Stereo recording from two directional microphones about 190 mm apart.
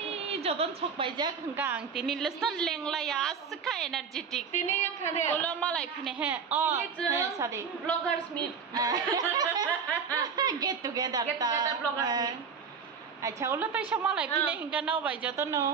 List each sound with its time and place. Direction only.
0.0 s a woman's voice: 30° right (ahead or behind)
1.6 s a woman's voice: 5° right (ahead or behind)
4.5 s a woman's voice: 35° left (ahead or behind)
5.3 s a woman's voice: 5° left (ahead or behind)
6.1 s a woman's voice: 10° right (ahead or behind)